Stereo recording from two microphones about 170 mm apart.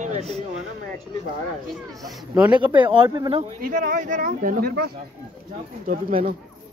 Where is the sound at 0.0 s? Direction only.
40° right (ahead or behind).